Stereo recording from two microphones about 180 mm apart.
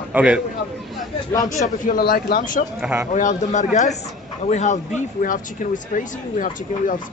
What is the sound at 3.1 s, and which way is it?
Speech, 45° left (ahead or behind).